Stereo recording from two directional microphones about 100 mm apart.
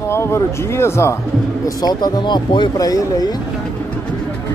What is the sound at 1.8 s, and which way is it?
Speech, 45° left (ahead or behind).